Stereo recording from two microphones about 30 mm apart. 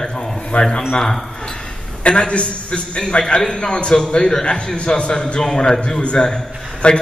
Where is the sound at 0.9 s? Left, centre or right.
Centre.